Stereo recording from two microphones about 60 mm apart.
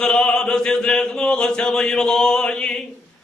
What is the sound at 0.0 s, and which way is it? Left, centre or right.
Speech, centre.